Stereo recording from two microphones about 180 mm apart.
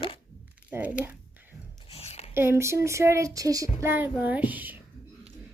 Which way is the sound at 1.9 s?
35° left (ahead or behind).